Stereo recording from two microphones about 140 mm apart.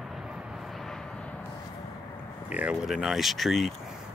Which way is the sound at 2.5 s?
5° right (ahead or behind).